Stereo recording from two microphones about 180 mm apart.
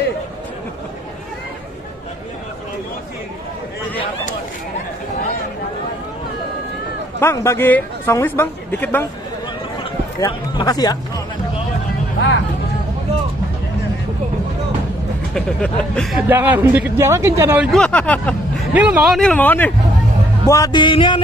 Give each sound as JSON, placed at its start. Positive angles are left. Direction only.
{"t": 7.2, "sound": "speech", "side_deg": 15}
{"t": 10.2, "sound": "speech", "side_deg": 20}
{"t": 15.3, "sound": "speech", "side_deg": 5}
{"t": 16.2, "sound": "speech", "side_deg": -10}
{"t": 17.6, "sound": "speech", "side_deg": 5}
{"t": 18.7, "sound": "speech", "side_deg": -5}